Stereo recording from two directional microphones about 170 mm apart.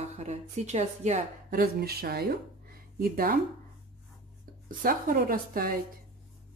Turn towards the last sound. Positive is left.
turn(degrees=-55)  # may be behind; listen again after turning